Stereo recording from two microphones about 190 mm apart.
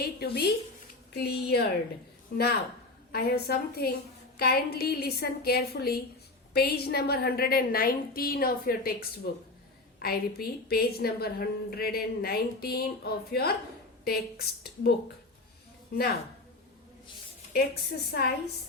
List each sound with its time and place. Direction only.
0.0 s a woman's voice: 55° left (ahead or behind)
3.1 s a woman's voice: 55° left (ahead or behind)
17.5 s a woman's voice: 55° left (ahead or behind)